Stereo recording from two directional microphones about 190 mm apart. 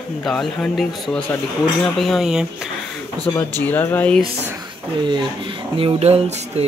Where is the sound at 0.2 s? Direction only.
Centre (ahead or behind).